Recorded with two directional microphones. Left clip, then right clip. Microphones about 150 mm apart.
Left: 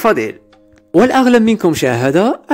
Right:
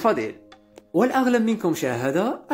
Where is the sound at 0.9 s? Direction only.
75° left (ahead or behind).